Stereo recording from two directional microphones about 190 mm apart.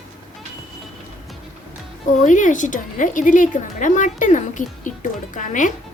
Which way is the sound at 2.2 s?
40° left (ahead or behind).